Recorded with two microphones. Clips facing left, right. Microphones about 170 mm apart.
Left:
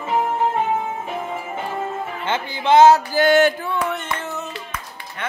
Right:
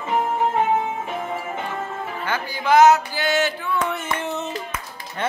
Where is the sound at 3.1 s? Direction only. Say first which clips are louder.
Left 7 dB; 50° left (ahead or behind).